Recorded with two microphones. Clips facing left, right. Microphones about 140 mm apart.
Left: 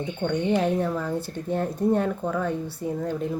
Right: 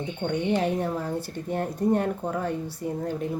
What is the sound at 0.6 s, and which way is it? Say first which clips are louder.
Speech: left 2 dB; 15° right (ahead or behind).